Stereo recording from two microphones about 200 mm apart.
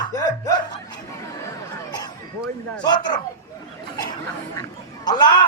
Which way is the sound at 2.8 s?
20° left (ahead or behind).